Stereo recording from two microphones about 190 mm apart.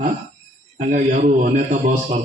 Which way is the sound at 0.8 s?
40° right (ahead or behind).